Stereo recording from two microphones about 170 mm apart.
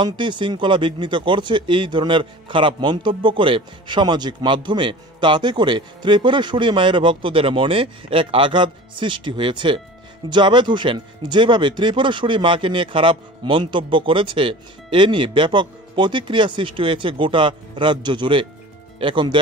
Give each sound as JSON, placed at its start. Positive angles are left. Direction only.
{"t": 0.0, "sound": "speech", "side_deg": -25}